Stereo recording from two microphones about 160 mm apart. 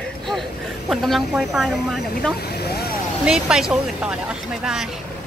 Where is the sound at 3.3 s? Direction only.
5° right (ahead or behind).